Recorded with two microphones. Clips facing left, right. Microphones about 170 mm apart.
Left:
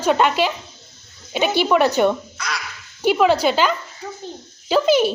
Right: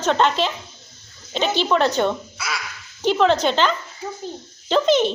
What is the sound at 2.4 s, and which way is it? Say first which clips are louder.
Quack: left 1 dB; 5° right (ahead or behind).